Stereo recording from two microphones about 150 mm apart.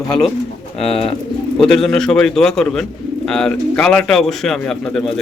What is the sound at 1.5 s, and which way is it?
Speech, 5° left (ahead or behind).